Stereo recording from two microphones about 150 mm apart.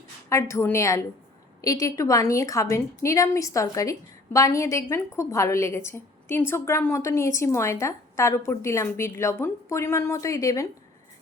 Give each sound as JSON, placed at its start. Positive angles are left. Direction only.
{"t": 0.3, "sound": "a woman's voice", "side_deg": 20}